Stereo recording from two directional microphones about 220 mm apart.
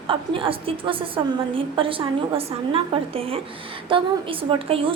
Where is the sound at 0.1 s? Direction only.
25° right (ahead or behind).